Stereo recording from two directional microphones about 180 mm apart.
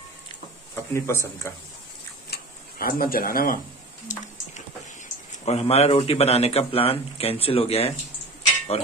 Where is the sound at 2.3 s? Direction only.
55° left (ahead or behind).